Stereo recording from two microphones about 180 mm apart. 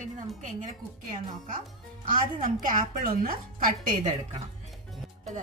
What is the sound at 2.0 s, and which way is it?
A woman's voice, 50° right (ahead or behind).